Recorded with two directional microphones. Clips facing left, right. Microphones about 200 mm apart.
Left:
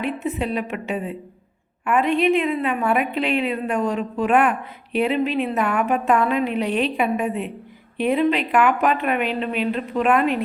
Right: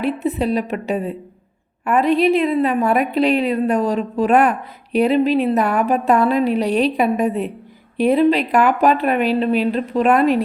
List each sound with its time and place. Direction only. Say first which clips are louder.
0.0 s a woman's voice: right 5 dB; 35° right (ahead or behind)